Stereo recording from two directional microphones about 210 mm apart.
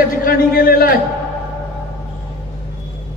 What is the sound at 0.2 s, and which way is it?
Speech, 45° left (ahead or behind).